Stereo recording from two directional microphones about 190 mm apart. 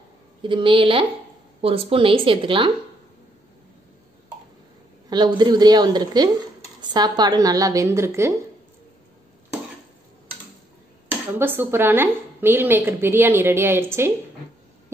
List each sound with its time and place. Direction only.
0.4 s a woman's voice: 25° right (ahead or behind)
5.1 s a woman's voice: 25° right (ahead or behind)
11.1 s speech: 10° right (ahead or behind)